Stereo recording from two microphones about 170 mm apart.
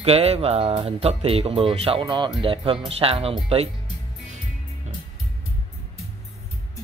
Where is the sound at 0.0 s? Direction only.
35° right (ahead or behind).